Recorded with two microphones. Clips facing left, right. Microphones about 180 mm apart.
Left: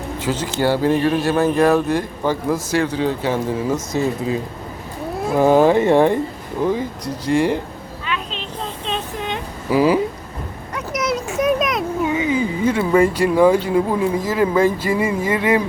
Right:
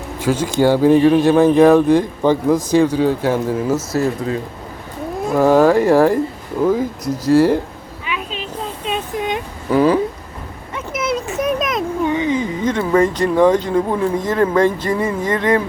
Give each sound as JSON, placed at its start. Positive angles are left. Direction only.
{"t": 0.3, "sound": "speech", "side_deg": -10}
{"t": 5.2, "sound": "speech", "side_deg": 0}
{"t": 7.3, "sound": "speech", "side_deg": -5}
{"t": 8.0, "sound": "a sound", "side_deg": -10}
{"t": 9.6, "sound": "speech", "side_deg": 5}
{"t": 10.8, "sound": "a sound", "side_deg": 0}